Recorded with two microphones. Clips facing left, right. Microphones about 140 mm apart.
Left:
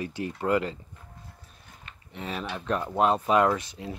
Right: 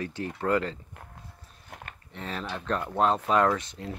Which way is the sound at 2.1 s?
10° left (ahead or behind).